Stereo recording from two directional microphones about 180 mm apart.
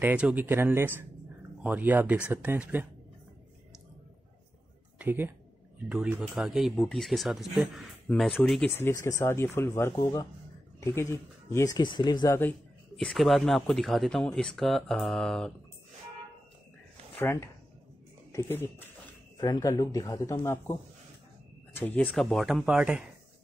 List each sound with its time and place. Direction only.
0.0 s speech: 10° right (ahead or behind)
4.9 s speech: 10° right (ahead or behind); by 12.4 s 25° left (ahead or behind)
12.4 s speech: 10° left (ahead or behind)
17.2 s speech: 15° left (ahead or behind)
21.7 s speech: 10° left (ahead or behind); by 23.0 s 5° right (ahead or behind)